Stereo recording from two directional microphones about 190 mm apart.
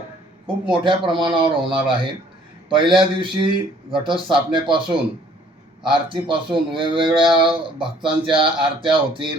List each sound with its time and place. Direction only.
0.4 s speech: 25° right (ahead or behind)
5.9 s speech: 25° right (ahead or behind)